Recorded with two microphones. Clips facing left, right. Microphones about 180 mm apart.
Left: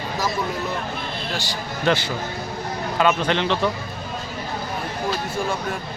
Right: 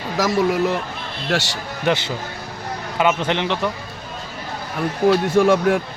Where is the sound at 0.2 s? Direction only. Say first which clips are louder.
Right 9 dB; 90° right.